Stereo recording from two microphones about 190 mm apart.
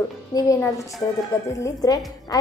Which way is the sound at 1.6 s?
20° left (ahead or behind).